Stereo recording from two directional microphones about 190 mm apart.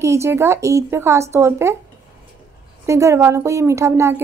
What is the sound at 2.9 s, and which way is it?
Speech, 15° right (ahead or behind).